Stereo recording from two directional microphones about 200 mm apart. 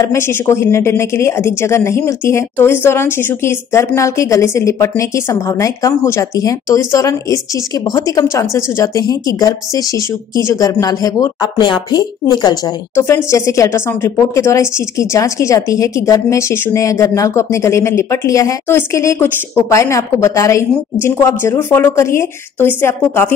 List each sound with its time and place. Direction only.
0.0 s a woman's voice: 15° left (ahead or behind)